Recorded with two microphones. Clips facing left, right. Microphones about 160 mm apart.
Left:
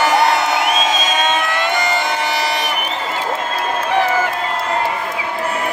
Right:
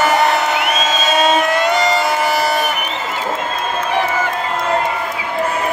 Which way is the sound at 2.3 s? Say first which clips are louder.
Right 3 dB; 50° right (ahead or behind).